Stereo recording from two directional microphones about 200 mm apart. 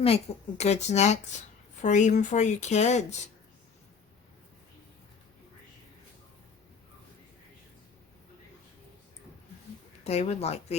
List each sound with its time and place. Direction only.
0.0 s speech: 30° left (ahead or behind)
10.0 s speech: 30° left (ahead or behind)